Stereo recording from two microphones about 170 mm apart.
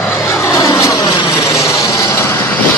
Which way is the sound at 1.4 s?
15° left (ahead or behind).